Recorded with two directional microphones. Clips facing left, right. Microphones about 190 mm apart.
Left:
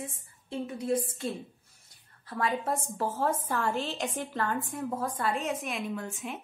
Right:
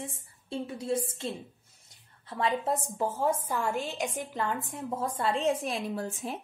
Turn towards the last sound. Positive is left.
turn(degrees=-35)  # may be behind; listen again after turning